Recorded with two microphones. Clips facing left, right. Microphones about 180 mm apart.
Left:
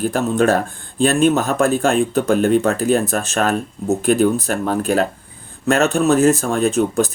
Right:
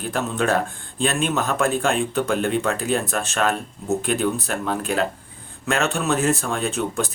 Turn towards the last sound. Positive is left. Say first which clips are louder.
# left 8 dB
turn(degrees=40)  # may be behind; listen again after turning